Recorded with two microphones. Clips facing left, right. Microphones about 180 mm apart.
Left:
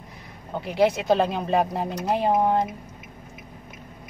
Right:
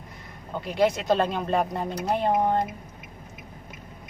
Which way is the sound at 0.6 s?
Centre (ahead or behind).